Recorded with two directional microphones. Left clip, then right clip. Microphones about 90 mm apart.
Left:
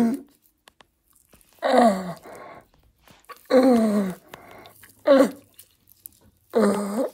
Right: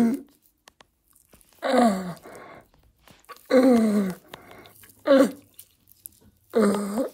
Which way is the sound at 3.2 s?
45° left (ahead or behind).